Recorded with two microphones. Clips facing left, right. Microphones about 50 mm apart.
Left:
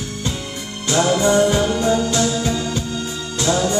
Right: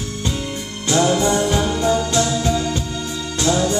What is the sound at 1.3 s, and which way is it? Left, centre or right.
Music, left.